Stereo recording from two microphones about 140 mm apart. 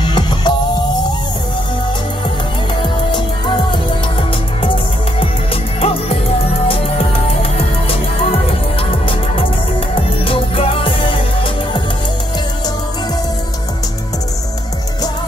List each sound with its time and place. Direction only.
0.0 s music: 30° left (ahead or behind)
2.8 s music: 35° left (ahead or behind)
5.8 s music: 45° left (ahead or behind)
9.9 s music: 40° left (ahead or behind)